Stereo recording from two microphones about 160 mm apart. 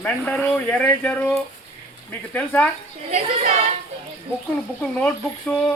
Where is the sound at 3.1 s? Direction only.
50° right (ahead or behind).